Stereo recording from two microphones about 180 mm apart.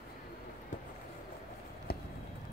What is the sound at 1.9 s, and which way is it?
Clip-clop, 60° left (ahead or behind).